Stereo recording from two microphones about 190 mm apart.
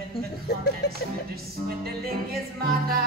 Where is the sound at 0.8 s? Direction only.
60° left (ahead or behind).